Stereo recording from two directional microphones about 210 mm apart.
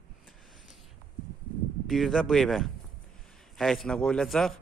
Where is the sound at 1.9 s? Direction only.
Centre (ahead or behind).